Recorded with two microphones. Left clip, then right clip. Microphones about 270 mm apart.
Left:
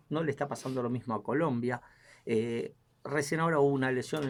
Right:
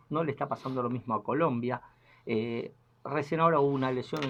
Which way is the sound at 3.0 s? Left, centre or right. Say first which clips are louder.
Right 4 dB; centre.